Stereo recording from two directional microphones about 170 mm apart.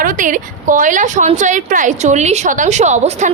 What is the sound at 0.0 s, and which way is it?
A woman's voice, 50° right (ahead or behind).